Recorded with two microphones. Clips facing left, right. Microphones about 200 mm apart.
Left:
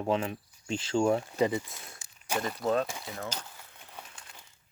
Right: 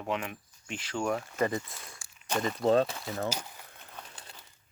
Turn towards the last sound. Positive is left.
turn(degrees=10)  # may be behind; listen again after turning